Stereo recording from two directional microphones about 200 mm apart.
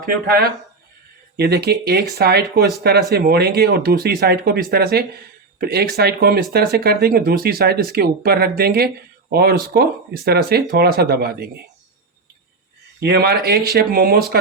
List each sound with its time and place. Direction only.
0.0 s speech: 45° right (ahead or behind)
13.0 s speech: 50° right (ahead or behind)